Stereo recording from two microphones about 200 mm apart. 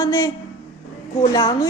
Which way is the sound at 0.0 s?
15° left (ahead or behind).